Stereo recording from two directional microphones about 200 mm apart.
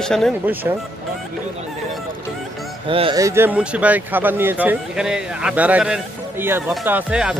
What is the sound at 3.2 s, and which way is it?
Speech, 15° right (ahead or behind).